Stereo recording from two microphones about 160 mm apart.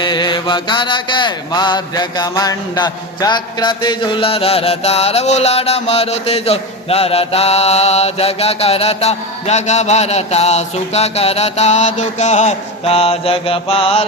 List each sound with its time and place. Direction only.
0.0 s mantra: 30° left (ahead or behind)